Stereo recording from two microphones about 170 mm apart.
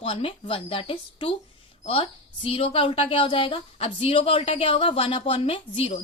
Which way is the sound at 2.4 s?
30° left (ahead or behind).